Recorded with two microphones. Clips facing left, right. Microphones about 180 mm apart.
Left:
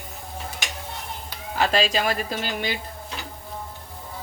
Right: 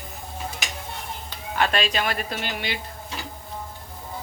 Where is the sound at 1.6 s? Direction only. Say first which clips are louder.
Left 2 dB; 30° left (ahead or behind).